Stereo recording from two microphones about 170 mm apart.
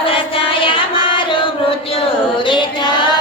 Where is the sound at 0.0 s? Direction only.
30° left (ahead or behind).